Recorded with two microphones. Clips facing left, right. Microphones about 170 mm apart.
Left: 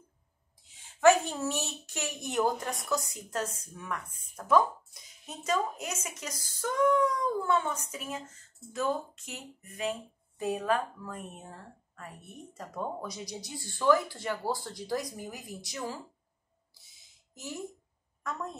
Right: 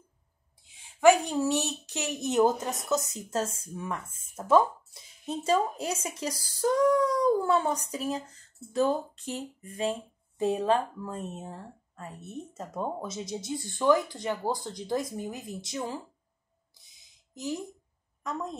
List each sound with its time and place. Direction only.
1.0 s a woman's voice: 15° right (ahead or behind)
16.7 s a sound: 20° right (ahead or behind)
18.2 s a woman's voice: 15° right (ahead or behind)